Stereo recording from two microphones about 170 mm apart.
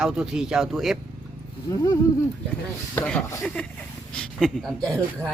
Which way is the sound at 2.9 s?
10° left (ahead or behind).